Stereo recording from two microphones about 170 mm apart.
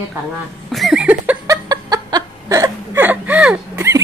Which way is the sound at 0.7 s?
Centre (ahead or behind).